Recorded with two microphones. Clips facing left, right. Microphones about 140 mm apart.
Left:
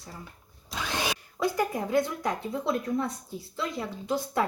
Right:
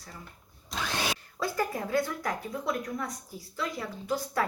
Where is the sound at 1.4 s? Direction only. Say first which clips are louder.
Left 3 dB; 20° left (ahead or behind).